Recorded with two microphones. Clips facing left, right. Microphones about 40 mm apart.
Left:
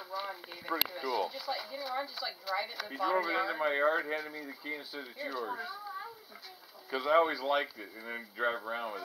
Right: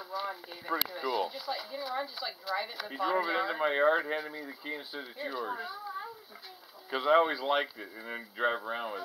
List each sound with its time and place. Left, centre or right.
0.0 s speech: centre
0.9 s speech: centre
4.1 s speech: centre
5.7 s a sound: centre
6.9 s speech: right
8.4 s speech: right